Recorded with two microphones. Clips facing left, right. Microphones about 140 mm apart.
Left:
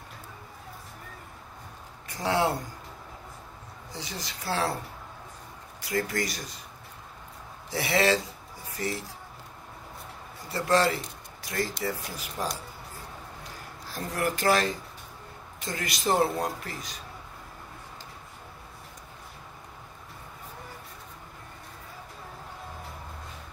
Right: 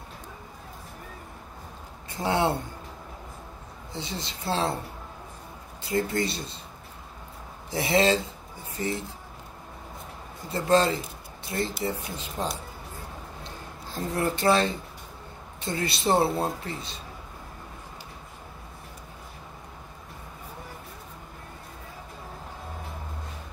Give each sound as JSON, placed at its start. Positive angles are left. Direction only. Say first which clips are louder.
{"t": 2.0, "sound": "speech", "louder": "right 1 dB", "side_deg": -25}
{"t": 3.9, "sound": "a man's voice", "louder": "right 3 dB", "side_deg": -25}
{"t": 5.8, "sound": "a man's voice", "louder": "right 3 dB", "side_deg": -30}
{"t": 7.7, "sound": "a man's voice", "louder": "right 2 dB", "side_deg": -25}
{"t": 10.5, "sound": "a man's voice", "louder": "right 2 dB", "side_deg": -25}
{"t": 13.4, "sound": "a sound", "louder": "right 2 dB", "side_deg": -25}
{"t": 15.6, "sound": "a man's voice", "louder": "right 3 dB", "side_deg": -30}